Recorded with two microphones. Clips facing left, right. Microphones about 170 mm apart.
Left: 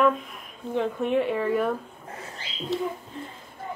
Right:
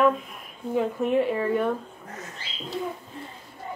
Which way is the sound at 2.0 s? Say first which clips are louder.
Even; 30° left (ahead or behind).